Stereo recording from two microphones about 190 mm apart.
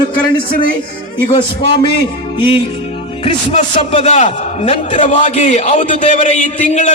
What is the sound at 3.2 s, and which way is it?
A man's voice, 30° left (ahead or behind).